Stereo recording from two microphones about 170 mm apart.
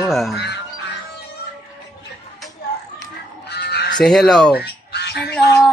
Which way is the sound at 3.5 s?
80° left.